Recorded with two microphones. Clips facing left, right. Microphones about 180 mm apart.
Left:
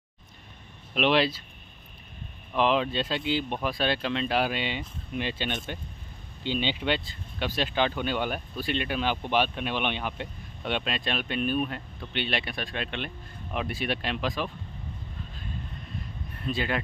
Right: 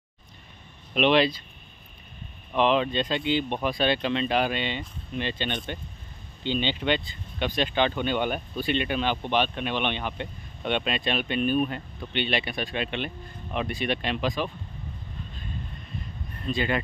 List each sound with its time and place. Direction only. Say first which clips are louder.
0.9 s speech: right 3 dB; 5° left (ahead or behind)
2.5 s speech: right 2 dB; centre (ahead or behind)
16.3 s speech: right 2 dB; 5° left (ahead or behind)